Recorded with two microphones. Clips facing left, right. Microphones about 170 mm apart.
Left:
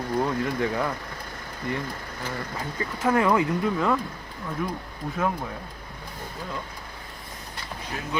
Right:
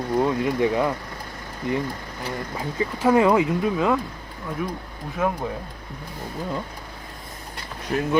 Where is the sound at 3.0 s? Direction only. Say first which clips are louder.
Right 4 dB; 20° right (ahead or behind).